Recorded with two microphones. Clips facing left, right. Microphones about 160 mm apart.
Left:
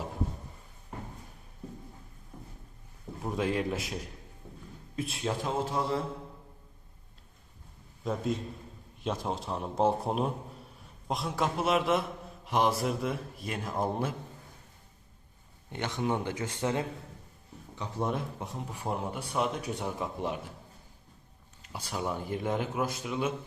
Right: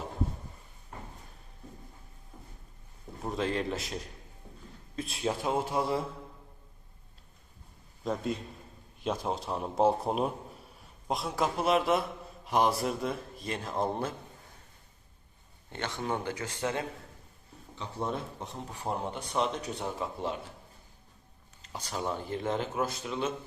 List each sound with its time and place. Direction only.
3.2 s speech: 10° left (ahead or behind)
4.9 s speech: centre (ahead or behind)
5.5 s mantra: 15° right (ahead or behind)
8.0 s speech: centre (ahead or behind)
15.7 s speech: 15° left (ahead or behind)
21.8 s speech: 10° left (ahead or behind)